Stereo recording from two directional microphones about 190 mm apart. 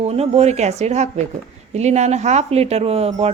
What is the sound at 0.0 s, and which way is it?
Speech, 35° right (ahead or behind).